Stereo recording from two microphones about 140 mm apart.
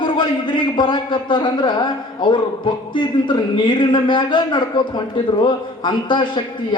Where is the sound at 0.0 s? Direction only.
35° left (ahead or behind).